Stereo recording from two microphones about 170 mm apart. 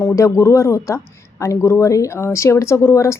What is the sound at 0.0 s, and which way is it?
Speech, 15° left (ahead or behind).